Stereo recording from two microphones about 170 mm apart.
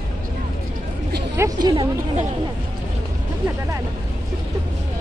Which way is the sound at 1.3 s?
20° right (ahead or behind).